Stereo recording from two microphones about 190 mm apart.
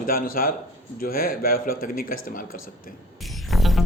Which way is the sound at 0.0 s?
50° left (ahead or behind).